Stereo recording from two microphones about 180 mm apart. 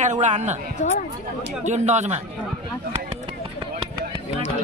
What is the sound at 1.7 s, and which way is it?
Speech, 40° right (ahead or behind).